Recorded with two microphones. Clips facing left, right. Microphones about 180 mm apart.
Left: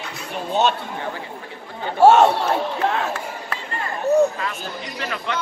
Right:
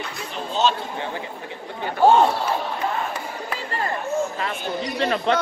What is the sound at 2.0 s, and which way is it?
Speech, 75° left (ahead or behind).